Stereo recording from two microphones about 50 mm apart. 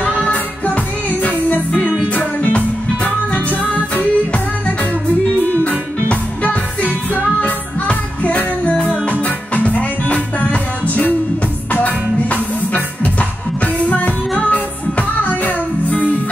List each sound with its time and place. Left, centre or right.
0.0 s music: left